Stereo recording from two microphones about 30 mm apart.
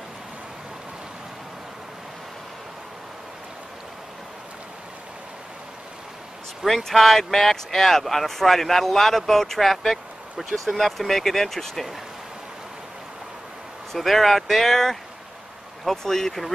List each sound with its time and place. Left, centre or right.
6.8 s speech: centre
13.9 s speech: centre
16.0 s speech: centre